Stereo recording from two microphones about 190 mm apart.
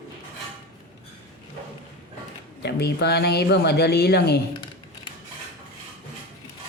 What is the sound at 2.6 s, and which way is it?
Speech, 60° left (ahead or behind).